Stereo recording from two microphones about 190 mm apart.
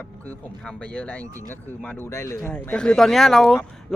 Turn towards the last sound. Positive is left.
turn(degrees=0)  # may be behind; listen again after turning